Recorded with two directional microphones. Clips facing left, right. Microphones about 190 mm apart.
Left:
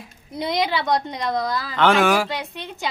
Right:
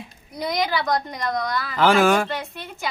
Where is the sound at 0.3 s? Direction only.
25° left (ahead or behind).